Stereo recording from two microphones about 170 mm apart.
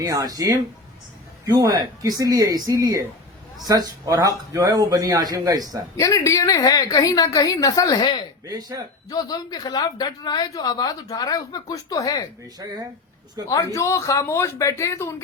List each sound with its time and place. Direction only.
0.0 s speech: 20° right (ahead or behind)
6.0 s a woman's voice: 20° left (ahead or behind)
8.4 s speech: 20° right (ahead or behind)
9.0 s a woman's voice: 20° left (ahead or behind)
13.7 s speech: 15° left (ahead or behind)